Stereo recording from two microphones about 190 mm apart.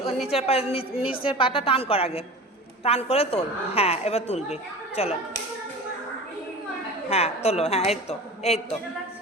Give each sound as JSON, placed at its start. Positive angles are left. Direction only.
{"t": 0.3, "sound": "a woman's voice", "side_deg": 30}
{"t": 7.1, "sound": "a woman's voice", "side_deg": 35}